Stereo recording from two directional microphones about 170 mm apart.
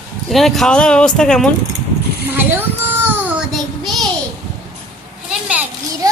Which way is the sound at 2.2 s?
10° right (ahead or behind).